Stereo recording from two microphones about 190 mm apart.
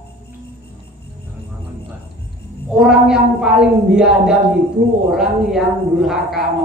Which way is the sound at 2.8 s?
5° right (ahead or behind).